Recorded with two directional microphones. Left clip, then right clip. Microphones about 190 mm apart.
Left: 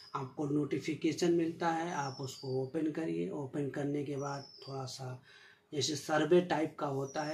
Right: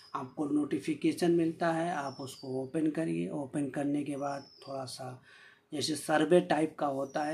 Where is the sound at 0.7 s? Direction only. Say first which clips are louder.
Right 3 dB; 35° right (ahead or behind).